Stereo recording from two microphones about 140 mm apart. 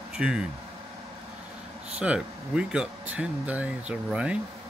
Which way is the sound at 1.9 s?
10° right (ahead or behind).